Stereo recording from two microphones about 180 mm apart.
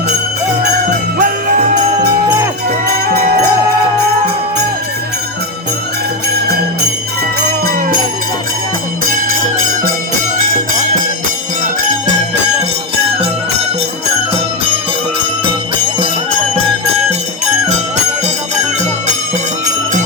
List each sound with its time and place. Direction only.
1.2 s jingle bell: 50° right (ahead or behind)
2.6 s music: 60° right (ahead or behind)
7.6 s jingle bell: 55° right (ahead or behind)
9.0 s music: 50° right (ahead or behind)